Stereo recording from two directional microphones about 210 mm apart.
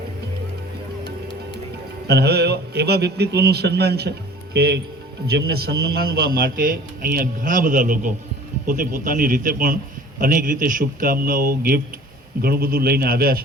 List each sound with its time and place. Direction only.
2.0 s a man's voice: 50° right (ahead or behind)